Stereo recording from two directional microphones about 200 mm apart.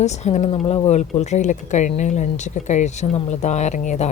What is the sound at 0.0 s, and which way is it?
Speech, 35° left (ahead or behind).